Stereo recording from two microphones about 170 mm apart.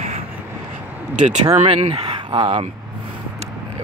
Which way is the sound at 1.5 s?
35° right (ahead or behind).